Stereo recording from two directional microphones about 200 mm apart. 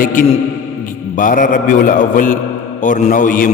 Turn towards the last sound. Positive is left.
turn(degrees=40)  # may be behind; listen again after turning